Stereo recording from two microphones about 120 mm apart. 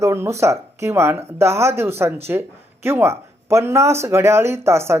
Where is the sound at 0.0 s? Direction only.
25° right (ahead or behind).